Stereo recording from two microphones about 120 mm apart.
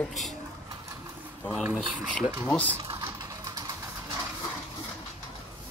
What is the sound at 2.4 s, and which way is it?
Speech, 10° left (ahead or behind).